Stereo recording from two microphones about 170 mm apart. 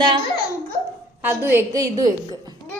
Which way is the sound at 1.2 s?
15° right (ahead or behind).